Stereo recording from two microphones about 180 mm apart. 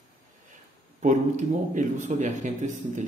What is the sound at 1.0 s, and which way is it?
Speech, 40° right (ahead or behind).